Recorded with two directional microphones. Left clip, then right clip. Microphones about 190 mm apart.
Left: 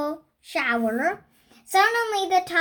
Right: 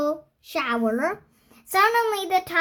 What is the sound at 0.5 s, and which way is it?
Child singing, 45° right (ahead or behind).